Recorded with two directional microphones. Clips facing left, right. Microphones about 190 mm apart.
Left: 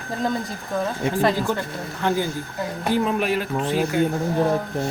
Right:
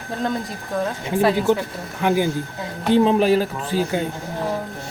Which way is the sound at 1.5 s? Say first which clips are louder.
Right 1 dB; 10° right (ahead or behind).